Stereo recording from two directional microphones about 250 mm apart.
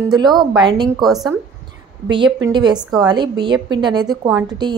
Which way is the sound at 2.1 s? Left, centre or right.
Centre.